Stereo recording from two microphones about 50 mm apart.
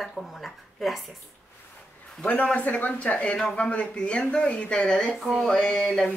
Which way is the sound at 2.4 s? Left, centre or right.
Left.